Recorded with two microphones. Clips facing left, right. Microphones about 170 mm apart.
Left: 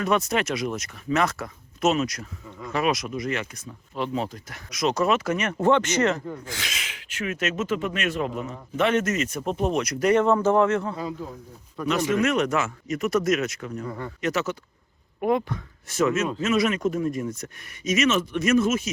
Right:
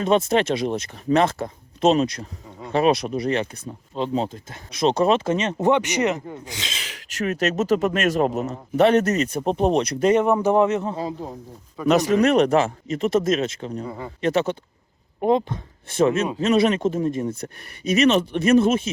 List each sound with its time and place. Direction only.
0.0 s speech: 25° right (ahead or behind)
11.0 s speech: 35° right (ahead or behind)
13.8 s speech: 10° right (ahead or behind)
14.2 s speech: 30° right (ahead or behind)